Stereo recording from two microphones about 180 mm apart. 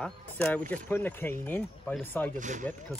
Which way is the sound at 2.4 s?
45° right (ahead or behind).